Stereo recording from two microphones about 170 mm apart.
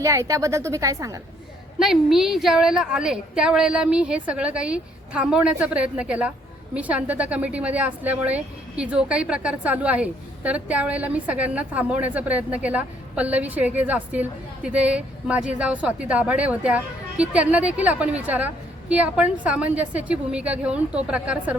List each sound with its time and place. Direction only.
0.0 s a woman's voice: 20° right (ahead or behind)
1.8 s a woman's voice: centre (ahead or behind)